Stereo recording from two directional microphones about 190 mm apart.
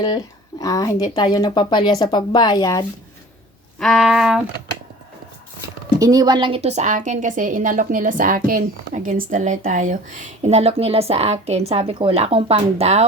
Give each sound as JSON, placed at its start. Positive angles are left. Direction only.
{"t": 0.6, "sound": "speech", "side_deg": 20}
{"t": 3.8, "sound": "a sound", "side_deg": 0}
{"t": 6.0, "sound": "a woman's voice", "side_deg": -20}